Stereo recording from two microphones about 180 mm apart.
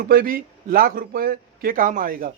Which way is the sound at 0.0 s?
55° right (ahead or behind).